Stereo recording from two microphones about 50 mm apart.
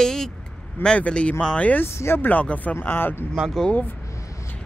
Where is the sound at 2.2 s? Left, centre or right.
Left.